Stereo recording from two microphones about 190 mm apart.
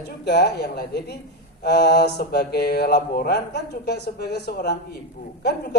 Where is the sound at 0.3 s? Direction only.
60° left (ahead or behind).